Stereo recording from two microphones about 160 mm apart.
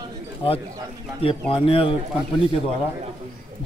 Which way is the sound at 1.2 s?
35° left (ahead or behind).